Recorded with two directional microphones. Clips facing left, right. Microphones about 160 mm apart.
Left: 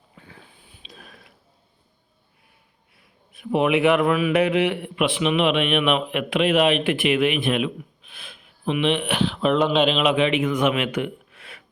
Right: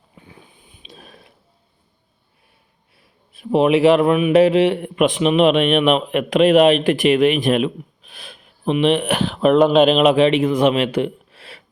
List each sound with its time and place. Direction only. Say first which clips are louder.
0.2 s sniff: right 2 dB; 20° right (ahead or behind)
3.0 s a man's voice: right 2 dB; 30° right (ahead or behind)